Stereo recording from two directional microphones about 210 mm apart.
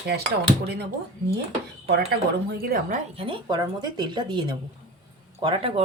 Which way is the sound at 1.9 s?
50° right (ahead or behind).